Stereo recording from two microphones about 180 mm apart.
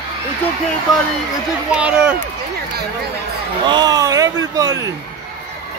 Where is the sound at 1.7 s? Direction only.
5° right (ahead or behind).